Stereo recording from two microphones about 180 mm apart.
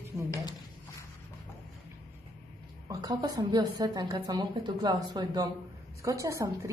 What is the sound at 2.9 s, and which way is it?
A woman's voice, 20° right (ahead or behind).